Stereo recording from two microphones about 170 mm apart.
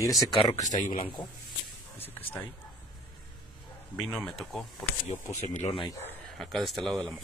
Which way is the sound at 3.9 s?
5° left (ahead or behind).